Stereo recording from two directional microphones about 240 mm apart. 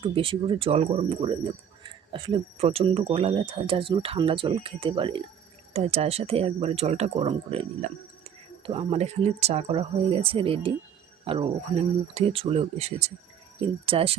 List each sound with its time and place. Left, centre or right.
0.0 s speech: right
12.1 s speech: right